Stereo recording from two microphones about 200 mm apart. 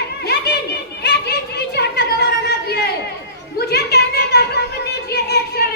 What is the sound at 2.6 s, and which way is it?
Chatter, 55° left (ahead or behind).